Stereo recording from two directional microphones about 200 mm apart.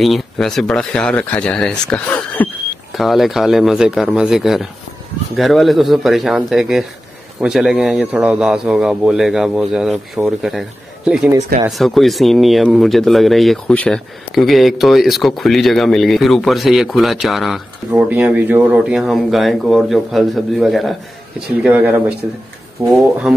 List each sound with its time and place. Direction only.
0.0 s speech: centre (ahead or behind)